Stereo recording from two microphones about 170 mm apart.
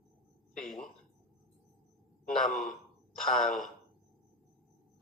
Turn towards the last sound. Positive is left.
turn(degrees=0)  # may be behind; listen again after turning